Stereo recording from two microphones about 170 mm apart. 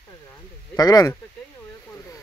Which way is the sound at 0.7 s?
20° left (ahead or behind).